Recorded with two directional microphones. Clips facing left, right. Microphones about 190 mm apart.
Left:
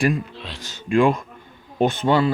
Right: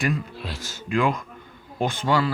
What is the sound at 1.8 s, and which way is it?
Speech, 25° left (ahead or behind).